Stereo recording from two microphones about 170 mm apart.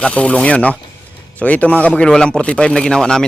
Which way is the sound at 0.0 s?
10° left (ahead or behind).